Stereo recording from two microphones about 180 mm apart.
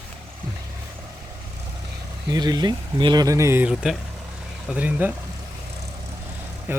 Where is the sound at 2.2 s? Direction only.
20° right (ahead or behind).